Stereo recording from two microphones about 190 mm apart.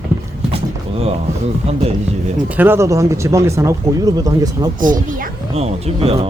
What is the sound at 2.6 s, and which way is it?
Speech, 15° right (ahead or behind).